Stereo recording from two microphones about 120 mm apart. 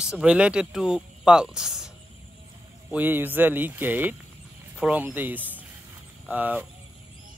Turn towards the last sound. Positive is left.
turn(degrees=-10)  # may be behind; listen again after turning